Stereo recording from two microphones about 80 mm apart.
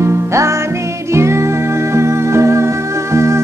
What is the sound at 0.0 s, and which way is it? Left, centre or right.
Music, right.